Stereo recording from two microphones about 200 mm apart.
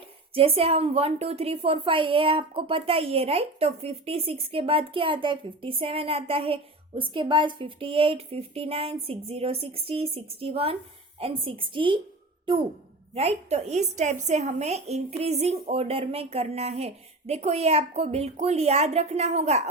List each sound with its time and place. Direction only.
0.3 s a woman's voice: 30° right (ahead or behind)